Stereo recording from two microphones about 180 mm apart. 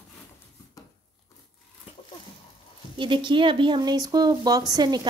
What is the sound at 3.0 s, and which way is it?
Speech, 25° right (ahead or behind).